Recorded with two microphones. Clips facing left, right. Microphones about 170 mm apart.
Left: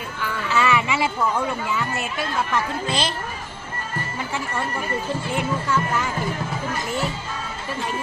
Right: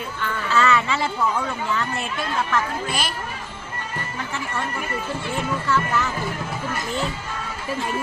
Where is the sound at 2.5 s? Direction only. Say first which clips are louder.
Even; 20° left (ahead or behind).